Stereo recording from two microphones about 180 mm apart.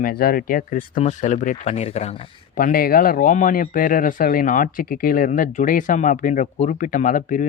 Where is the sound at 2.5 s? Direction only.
55° left (ahead or behind).